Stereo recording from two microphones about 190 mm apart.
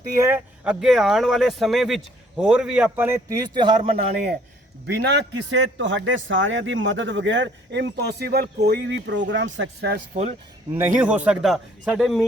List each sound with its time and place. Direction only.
0.2 s speech: 10° right (ahead or behind)
5.0 s a man's voice: 70° right (ahead or behind)
10.8 s speech: 10° right (ahead or behind)